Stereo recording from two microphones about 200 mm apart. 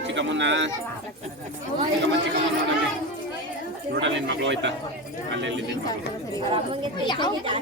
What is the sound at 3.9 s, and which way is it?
Speech, 65° right (ahead or behind).